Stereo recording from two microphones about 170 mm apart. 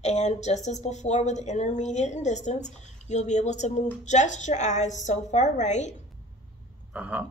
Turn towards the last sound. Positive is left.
turn(degrees=-10)  # may be behind; listen again after turning